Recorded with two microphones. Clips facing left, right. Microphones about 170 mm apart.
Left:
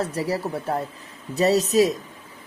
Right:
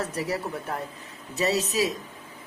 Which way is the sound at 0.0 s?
30° left (ahead or behind).